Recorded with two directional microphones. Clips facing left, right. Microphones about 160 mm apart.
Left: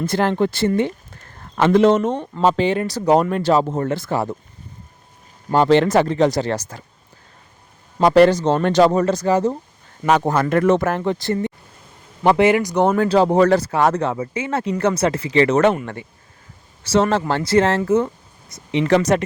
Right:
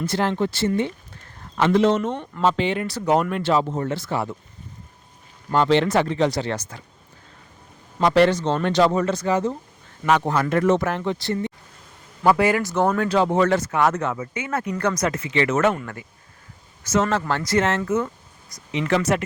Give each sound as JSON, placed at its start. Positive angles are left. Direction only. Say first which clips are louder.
{"t": 0.0, "sound": "speech", "louder": "left 4 dB", "side_deg": 50}
{"t": 5.5, "sound": "speech", "louder": "left 4 dB", "side_deg": 40}
{"t": 7.9, "sound": "speech", "louder": "left 5 dB", "side_deg": 40}
{"t": 12.2, "sound": "speech", "louder": "left 4 dB", "side_deg": 25}
{"t": 15.7, "sound": "speech", "louder": "left 5 dB", "side_deg": 25}